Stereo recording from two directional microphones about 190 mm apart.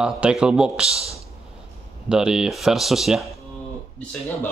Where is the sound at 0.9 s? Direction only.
30° right (ahead or behind).